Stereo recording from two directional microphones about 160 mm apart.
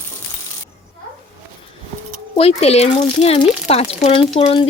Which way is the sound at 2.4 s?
40° left (ahead or behind).